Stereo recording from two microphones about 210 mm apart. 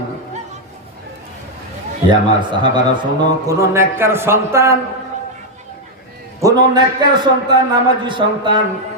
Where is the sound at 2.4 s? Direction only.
20° right (ahead or behind).